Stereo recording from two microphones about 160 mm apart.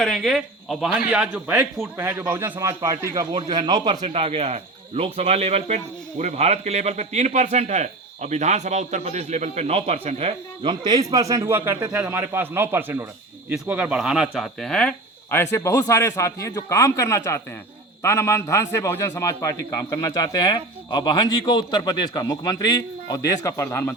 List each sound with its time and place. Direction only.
0.0 s a man's voice: centre (ahead or behind); by 23.9 s 15° left (ahead or behind)